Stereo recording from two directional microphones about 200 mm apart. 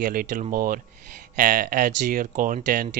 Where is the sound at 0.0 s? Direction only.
45° right (ahead or behind).